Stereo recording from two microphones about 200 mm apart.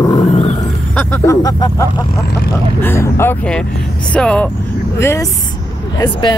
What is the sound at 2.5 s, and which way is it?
Speech, 10° left (ahead or behind).